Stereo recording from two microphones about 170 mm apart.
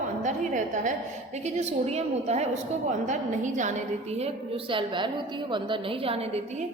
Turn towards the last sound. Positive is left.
turn(degrees=-35)  # may be behind; listen again after turning